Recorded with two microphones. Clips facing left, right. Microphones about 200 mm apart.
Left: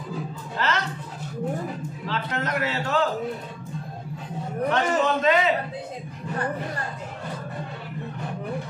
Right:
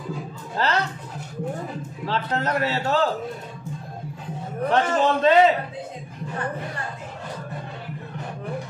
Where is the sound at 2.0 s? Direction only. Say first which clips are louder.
Right 4 dB; 35° right (ahead or behind).